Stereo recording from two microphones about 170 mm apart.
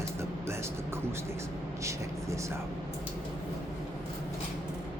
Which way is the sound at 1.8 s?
15° right (ahead or behind).